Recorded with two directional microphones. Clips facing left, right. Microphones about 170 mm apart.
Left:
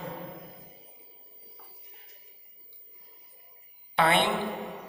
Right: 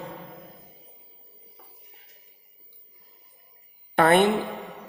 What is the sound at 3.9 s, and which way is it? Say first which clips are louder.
Speech: right 6 dB; 45° right (ahead or behind).